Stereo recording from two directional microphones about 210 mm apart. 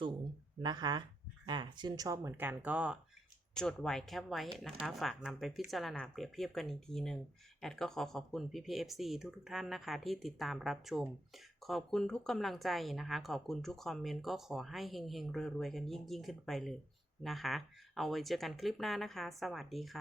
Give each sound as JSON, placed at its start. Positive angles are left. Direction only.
{"t": 0.6, "sound": "speech", "side_deg": -20}